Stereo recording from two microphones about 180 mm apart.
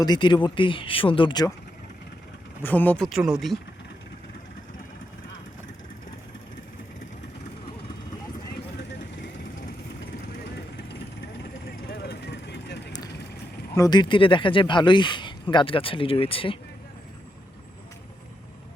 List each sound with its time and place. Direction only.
0.0 s speech: 25° left (ahead or behind)
2.6 s speech: 10° left (ahead or behind)
3.1 s speech: 5° right (ahead or behind)
11.9 s vehicle: 65° left (ahead or behind)
13.7 s speech: 20° left (ahead or behind)